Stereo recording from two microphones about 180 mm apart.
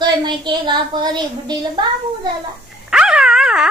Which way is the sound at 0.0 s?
25° right (ahead or behind).